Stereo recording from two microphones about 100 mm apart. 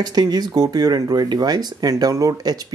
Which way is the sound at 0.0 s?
40° right (ahead or behind).